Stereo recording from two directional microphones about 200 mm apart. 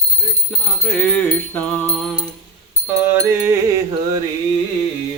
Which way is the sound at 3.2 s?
15° right (ahead or behind).